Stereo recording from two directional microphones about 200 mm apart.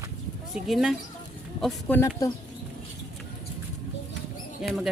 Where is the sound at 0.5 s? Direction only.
Centre (ahead or behind).